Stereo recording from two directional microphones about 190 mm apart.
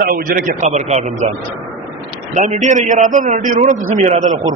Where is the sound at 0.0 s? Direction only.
50° right (ahead or behind).